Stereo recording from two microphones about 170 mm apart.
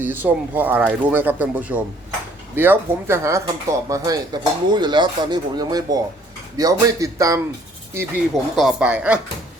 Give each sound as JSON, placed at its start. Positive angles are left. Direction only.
{"t": 0.0, "sound": "speech", "side_deg": -10}
{"t": 8.5, "sound": "speech", "side_deg": -5}